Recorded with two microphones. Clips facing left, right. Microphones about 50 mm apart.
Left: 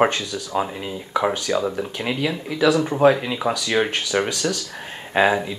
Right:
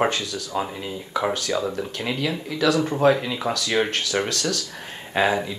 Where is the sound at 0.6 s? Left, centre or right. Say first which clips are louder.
Left 3 dB; centre.